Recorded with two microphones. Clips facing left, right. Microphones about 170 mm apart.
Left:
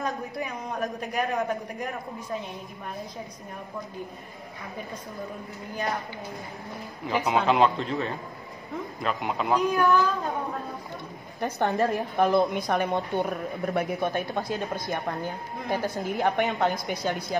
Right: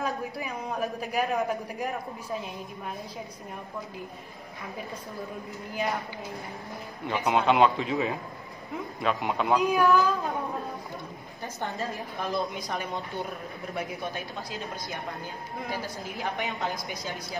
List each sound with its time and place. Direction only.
0.0 s a woman's voice: centre (ahead or behind)
7.1 s a woman's voice: centre (ahead or behind)
11.4 s a woman's voice: 65° left (ahead or behind)